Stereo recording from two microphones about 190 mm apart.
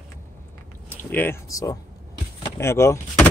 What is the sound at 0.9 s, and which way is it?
Speech, 10° left (ahead or behind).